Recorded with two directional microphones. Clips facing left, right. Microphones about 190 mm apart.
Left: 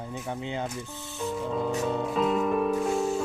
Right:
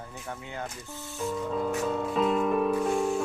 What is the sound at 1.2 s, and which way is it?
Music, centre (ahead or behind).